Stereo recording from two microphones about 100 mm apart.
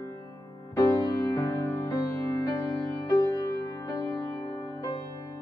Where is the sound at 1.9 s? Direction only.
25° left (ahead or behind).